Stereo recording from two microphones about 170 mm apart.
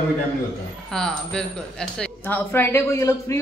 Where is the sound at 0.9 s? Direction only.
5° left (ahead or behind).